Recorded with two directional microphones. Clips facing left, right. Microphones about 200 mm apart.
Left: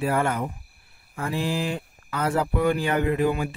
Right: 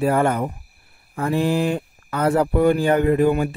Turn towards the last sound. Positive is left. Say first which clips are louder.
# right 6 dB
turn(degrees=-50)  # may be behind; listen again after turning